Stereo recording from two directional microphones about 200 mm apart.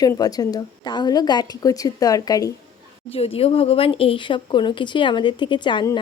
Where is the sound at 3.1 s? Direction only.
30° left (ahead or behind).